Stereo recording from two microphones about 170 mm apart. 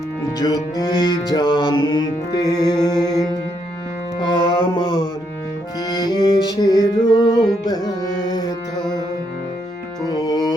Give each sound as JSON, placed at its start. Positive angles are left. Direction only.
{"t": 0.3, "sound": "music", "side_deg": 20}
{"t": 4.2, "sound": "mantra", "side_deg": 30}
{"t": 5.9, "sound": "music", "side_deg": 25}
{"t": 10.1, "sound": "music", "side_deg": 25}